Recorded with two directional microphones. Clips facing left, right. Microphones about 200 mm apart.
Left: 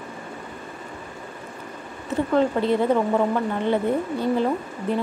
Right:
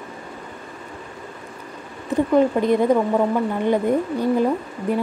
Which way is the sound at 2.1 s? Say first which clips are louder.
Right 4 dB; 15° right (ahead or behind).